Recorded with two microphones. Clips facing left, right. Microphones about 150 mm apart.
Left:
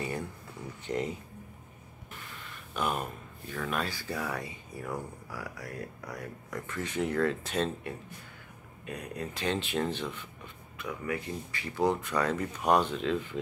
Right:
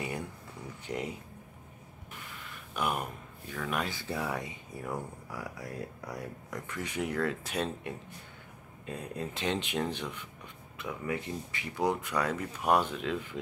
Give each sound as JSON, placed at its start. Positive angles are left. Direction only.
{"t": 0.8, "sound": "speech", "side_deg": -10}
{"t": 2.7, "sound": "speech", "side_deg": -10}
{"t": 8.8, "sound": "speech", "side_deg": -25}